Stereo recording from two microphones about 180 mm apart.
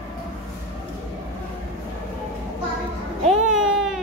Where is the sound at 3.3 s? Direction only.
Centre (ahead or behind).